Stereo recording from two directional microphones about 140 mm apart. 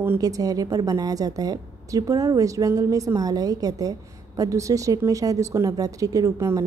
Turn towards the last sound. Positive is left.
turn(degrees=-25)  # may be behind; listen again after turning